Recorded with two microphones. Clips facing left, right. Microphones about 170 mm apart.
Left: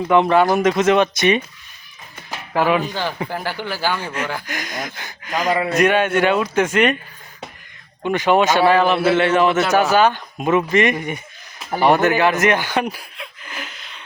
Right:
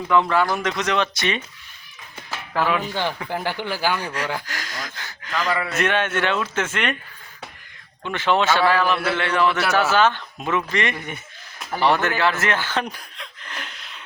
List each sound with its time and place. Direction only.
0.1 s speech: 20° left (ahead or behind)
2.3 s music: 15° left (ahead or behind)
3.2 s speech: 20° right (ahead or behind)
4.4 s a man's voice: 20° left (ahead or behind)
8.0 s a man's voice: 15° left (ahead or behind)